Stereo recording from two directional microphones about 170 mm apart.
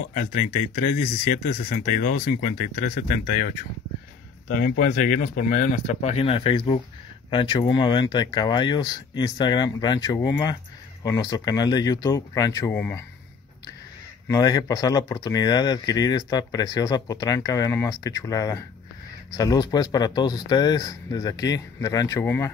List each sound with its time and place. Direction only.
0.1 s speech: 50° left (ahead or behind)
4.5 s speech: 55° left (ahead or behind); by 12.7 s 20° left (ahead or behind)
12.7 s speech: 10° left (ahead or behind)
14.2 s speech: 20° left (ahead or behind)